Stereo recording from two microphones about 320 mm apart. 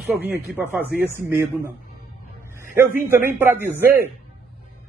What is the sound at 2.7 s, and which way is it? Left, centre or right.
A man's voice, centre.